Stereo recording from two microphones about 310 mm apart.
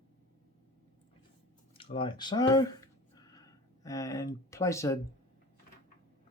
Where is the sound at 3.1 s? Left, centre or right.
Centre.